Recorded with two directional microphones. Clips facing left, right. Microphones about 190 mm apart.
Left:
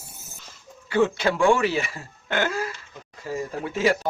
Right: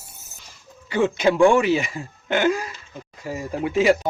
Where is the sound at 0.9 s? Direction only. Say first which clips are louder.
Right 2 dB; 15° right (ahead or behind).